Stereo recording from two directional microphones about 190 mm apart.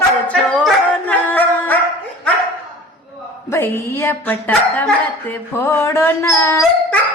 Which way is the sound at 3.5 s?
15° left (ahead or behind).